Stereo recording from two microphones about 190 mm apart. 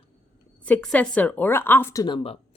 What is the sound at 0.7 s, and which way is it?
Speech, 5° left (ahead or behind).